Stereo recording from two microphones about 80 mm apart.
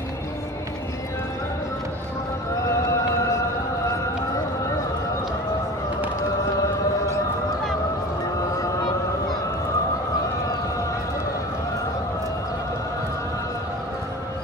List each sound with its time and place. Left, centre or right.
2.7 s music: left